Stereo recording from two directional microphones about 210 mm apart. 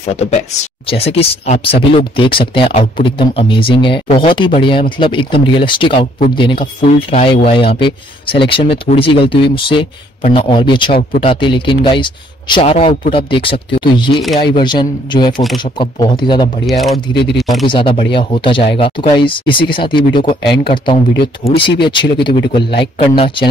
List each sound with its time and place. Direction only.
0.1 s speech: 30° left (ahead or behind)
16.6 s speech: centre (ahead or behind)
17.1 s speech: 55° left (ahead or behind)
17.4 s speech: centre (ahead or behind)
17.6 s speech: 25° left (ahead or behind)